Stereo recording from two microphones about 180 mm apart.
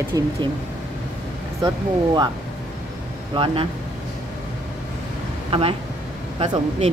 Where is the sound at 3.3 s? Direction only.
30° right (ahead or behind).